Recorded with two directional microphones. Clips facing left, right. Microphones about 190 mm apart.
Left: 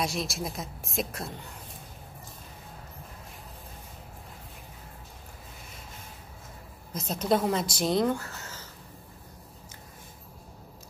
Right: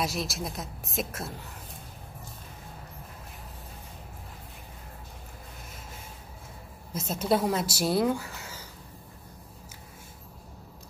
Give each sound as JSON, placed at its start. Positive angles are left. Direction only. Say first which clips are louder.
{"t": 0.0, "sound": "speech", "louder": "even", "side_deg": 0}
{"t": 6.9, "sound": "speech", "louder": "even", "side_deg": -5}